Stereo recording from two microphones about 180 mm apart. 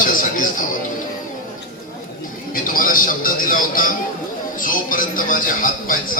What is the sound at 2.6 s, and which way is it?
Music, 50° left (ahead or behind).